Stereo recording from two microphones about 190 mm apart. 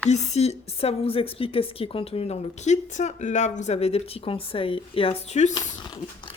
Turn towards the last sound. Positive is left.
turn(degrees=35)  # may be behind; listen again after turning